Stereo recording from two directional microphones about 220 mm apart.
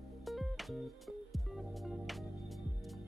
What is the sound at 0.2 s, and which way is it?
Music, centre (ahead or behind).